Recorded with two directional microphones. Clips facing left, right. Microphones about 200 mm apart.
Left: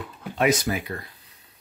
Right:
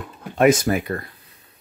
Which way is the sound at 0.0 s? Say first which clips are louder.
Right 7 dB; 50° right (ahead or behind).